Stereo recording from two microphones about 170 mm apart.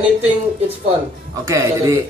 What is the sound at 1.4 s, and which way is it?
Speech, 15° right (ahead or behind).